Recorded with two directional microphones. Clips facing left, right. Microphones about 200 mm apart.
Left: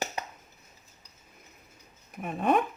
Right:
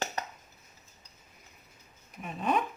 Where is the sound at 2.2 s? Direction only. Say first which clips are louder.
Left 4 dB; 50° left (ahead or behind).